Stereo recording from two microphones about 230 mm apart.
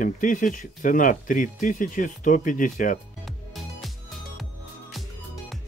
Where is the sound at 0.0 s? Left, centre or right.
Left.